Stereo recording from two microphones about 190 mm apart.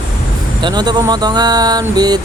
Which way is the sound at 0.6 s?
20° right (ahead or behind).